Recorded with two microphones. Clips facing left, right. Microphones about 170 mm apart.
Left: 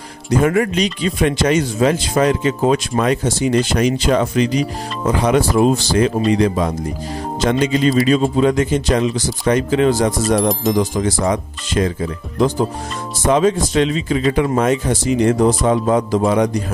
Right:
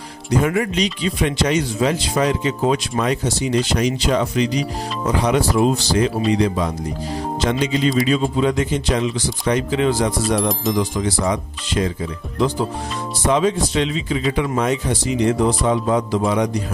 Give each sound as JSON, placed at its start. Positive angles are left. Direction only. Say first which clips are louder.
{"t": 0.3, "sound": "speech", "louder": "left 3 dB", "side_deg": 50}